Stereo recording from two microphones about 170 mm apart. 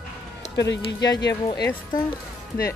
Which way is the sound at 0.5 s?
90° left.